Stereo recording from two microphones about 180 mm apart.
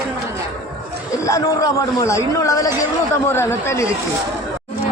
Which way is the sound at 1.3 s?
20° left (ahead or behind).